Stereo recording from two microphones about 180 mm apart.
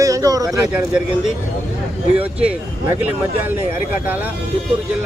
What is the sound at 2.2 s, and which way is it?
Speech, 10° right (ahead or behind).